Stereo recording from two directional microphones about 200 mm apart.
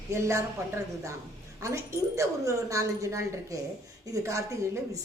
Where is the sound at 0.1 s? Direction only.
15° right (ahead or behind).